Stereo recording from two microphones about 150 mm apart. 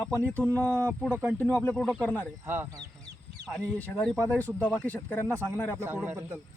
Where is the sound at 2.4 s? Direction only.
15° right (ahead or behind).